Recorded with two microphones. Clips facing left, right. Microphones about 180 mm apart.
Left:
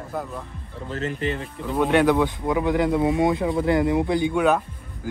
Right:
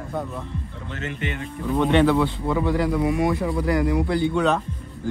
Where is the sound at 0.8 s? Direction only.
35° left (ahead or behind).